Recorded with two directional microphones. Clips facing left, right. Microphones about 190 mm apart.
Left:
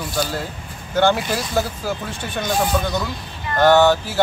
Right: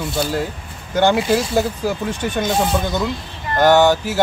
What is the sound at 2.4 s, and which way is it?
Speech, 20° right (ahead or behind).